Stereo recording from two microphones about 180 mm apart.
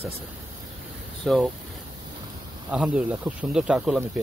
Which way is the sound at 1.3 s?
Centre (ahead or behind).